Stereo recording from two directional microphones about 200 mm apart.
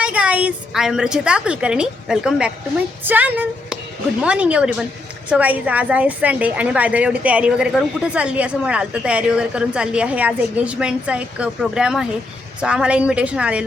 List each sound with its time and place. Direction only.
0.0 s a woman's voice: 5° right (ahead or behind)